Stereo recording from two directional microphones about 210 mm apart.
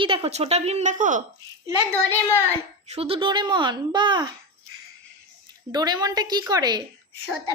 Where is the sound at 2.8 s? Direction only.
30° right (ahead or behind).